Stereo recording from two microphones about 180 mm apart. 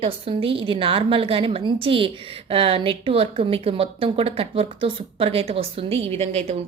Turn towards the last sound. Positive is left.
turn(degrees=-35)  # may be behind; listen again after turning